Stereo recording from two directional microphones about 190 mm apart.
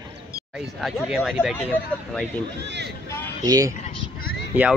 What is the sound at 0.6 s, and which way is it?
Speech, centre (ahead or behind).